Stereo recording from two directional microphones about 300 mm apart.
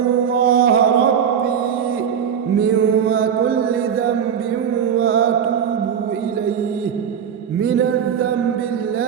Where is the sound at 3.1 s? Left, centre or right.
Right.